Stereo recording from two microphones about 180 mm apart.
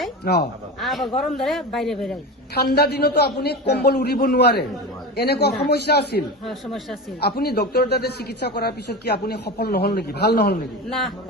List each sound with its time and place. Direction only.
0.3 s a man's voice: 55° left (ahead or behind)
0.8 s a man's voice: centre (ahead or behind)
2.6 s a man's voice: 60° left (ahead or behind)
6.4 s a man's voice: centre (ahead or behind)
7.2 s a man's voice: 60° left (ahead or behind)
10.8 s a man's voice: centre (ahead or behind)